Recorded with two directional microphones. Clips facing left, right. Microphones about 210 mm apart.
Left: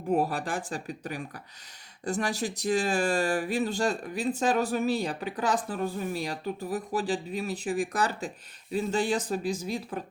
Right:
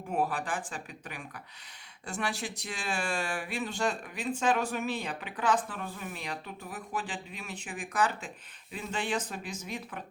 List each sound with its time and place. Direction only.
0.1 s speech: 40° left (ahead or behind)